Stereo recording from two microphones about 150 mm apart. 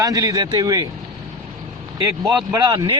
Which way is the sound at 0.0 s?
25° right (ahead or behind).